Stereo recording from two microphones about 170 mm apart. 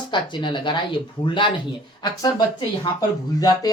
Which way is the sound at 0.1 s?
30° left (ahead or behind).